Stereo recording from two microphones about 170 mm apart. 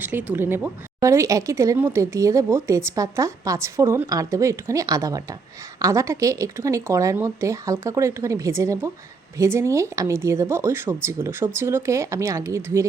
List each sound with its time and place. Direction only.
0.0 s a woman's voice: 10° right (ahead or behind)